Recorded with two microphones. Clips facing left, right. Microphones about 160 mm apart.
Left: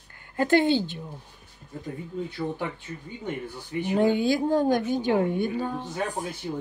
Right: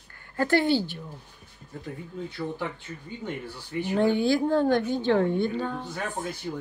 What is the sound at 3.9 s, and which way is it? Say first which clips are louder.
A woman's voice: even; 15° left (ahead or behind).